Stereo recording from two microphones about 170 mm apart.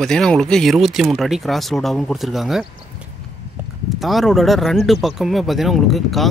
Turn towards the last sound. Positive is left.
turn(degrees=0)  # may be behind; listen again after turning